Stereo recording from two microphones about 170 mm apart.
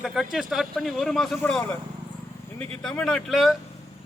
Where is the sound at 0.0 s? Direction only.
Centre (ahead or behind).